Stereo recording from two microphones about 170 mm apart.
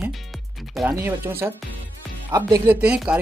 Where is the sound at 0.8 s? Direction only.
15° right (ahead or behind).